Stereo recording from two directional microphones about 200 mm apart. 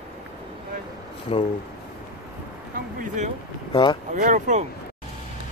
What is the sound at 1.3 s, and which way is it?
Speech, 30° left (ahead or behind).